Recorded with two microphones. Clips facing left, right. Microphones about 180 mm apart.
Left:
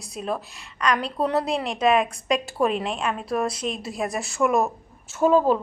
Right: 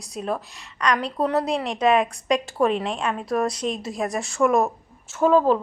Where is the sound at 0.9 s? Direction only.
10° left (ahead or behind).